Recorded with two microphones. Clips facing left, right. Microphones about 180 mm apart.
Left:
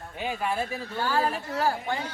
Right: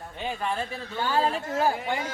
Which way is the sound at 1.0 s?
20° right (ahead or behind).